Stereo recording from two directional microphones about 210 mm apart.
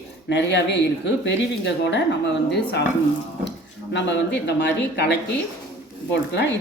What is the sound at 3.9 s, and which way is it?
Speech, 55° left (ahead or behind).